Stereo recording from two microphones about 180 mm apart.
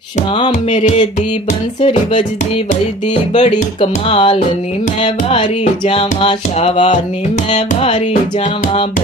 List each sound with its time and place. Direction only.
0.2 s music: 35° left (ahead or behind)
3.3 s music: 35° left (ahead or behind)